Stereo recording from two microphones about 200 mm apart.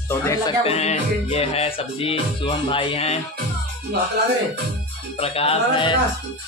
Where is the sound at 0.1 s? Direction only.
10° left (ahead or behind).